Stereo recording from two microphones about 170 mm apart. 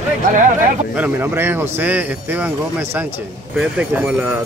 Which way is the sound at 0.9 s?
10° right (ahead or behind).